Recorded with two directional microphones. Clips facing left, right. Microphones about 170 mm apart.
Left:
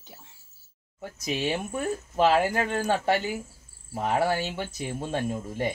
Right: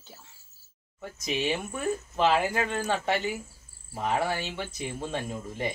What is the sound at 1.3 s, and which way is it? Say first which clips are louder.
Speech: left 1 dB; 40° left (ahead or behind).